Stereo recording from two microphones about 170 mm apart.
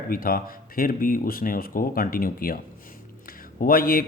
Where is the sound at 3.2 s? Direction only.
60° left (ahead or behind).